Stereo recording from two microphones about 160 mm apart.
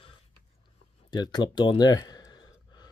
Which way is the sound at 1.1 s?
25° left (ahead or behind).